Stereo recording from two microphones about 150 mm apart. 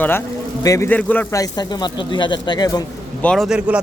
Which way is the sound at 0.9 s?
10° left (ahead or behind).